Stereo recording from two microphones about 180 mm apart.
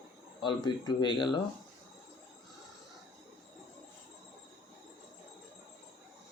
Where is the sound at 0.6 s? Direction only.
25° left (ahead or behind).